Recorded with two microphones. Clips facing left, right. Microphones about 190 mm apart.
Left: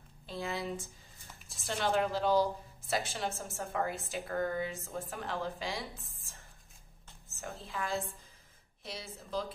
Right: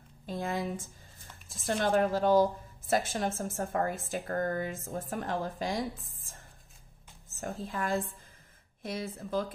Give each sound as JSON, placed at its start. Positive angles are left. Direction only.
{"t": 0.3, "sound": "a woman's voice", "side_deg": -45}
{"t": 7.3, "sound": "a woman's voice", "side_deg": -45}